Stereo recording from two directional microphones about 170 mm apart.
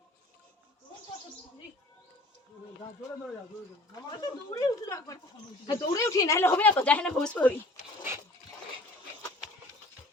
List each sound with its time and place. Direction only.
3.9 s a woman's voice: 25° left (ahead or behind); by 7.5 s 5° left (ahead or behind)